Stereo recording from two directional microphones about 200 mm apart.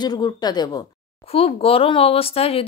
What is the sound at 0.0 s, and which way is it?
Speech, 20° left (ahead or behind).